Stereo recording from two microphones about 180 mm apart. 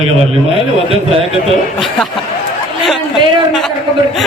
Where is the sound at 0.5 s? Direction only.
30° right (ahead or behind).